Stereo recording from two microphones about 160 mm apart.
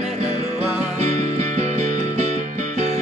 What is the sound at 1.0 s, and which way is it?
Music, 45° right (ahead or behind).